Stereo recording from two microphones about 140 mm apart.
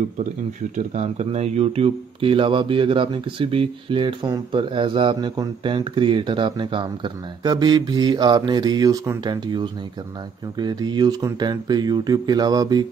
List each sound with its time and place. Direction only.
0.7 s speech: 55° right (ahead or behind); by 12.8 s 30° right (ahead or behind)